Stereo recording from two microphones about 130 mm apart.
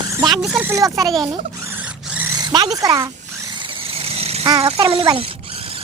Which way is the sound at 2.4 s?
35° right (ahead or behind).